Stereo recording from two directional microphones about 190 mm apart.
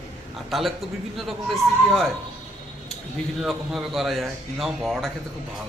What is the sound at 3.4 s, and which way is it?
A man's voice, centre (ahead or behind).